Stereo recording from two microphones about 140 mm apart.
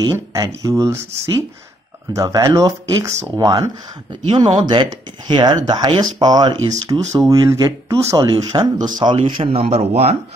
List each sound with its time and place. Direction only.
0.0 s speech: 25° right (ahead or behind); by 10.1 s 50° right (ahead or behind)